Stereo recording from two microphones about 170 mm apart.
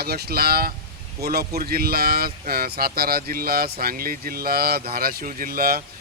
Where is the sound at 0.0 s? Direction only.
65° right (ahead or behind).